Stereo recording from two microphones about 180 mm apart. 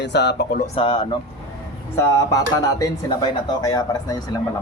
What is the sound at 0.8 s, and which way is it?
Speech, 30° left (ahead or behind).